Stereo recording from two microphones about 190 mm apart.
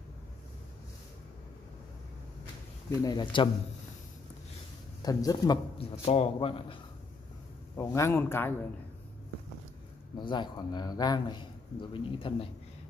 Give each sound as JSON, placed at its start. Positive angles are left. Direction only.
{"t": 2.9, "sound": "a man's voice", "side_deg": 20}
{"t": 5.0, "sound": "a man's voice", "side_deg": 20}
{"t": 7.7, "sound": "a man's voice", "side_deg": 15}
{"t": 10.1, "sound": "a man's voice", "side_deg": 25}